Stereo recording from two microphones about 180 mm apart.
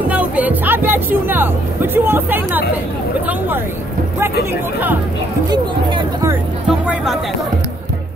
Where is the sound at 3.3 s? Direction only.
10° right (ahead or behind).